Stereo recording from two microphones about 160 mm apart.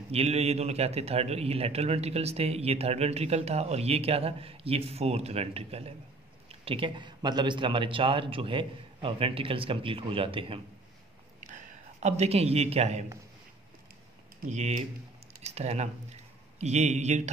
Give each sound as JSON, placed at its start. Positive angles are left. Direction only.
{"t": 0.1, "sound": "a man's voice", "side_deg": -40}
{"t": 12.0, "sound": "a man's voice", "side_deg": -45}
{"t": 14.5, "sound": "speech", "side_deg": -45}